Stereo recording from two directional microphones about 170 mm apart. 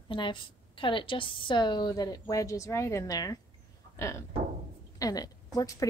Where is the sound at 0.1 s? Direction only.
30° left (ahead or behind).